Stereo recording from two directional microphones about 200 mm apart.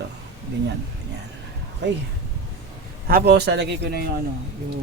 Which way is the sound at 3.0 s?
50° right (ahead or behind).